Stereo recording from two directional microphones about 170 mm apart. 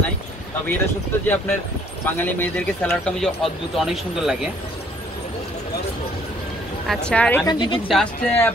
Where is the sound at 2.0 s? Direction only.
10° left (ahead or behind).